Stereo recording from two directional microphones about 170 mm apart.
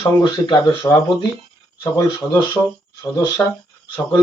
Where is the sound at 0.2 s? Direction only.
25° left (ahead or behind).